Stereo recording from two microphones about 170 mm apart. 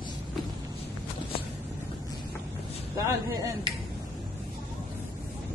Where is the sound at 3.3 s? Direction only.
20° right (ahead or behind).